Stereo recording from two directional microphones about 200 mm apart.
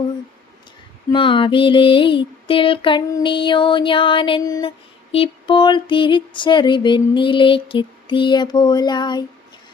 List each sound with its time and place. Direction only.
1.1 s music: 25° left (ahead or behind)